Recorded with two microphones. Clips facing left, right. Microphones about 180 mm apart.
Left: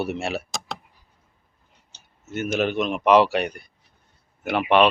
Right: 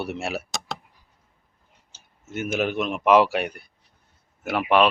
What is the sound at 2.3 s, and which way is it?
Speech, 10° right (ahead or behind).